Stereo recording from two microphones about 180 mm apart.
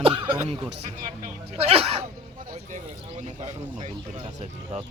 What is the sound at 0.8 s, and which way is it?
Speech, 35° right (ahead or behind).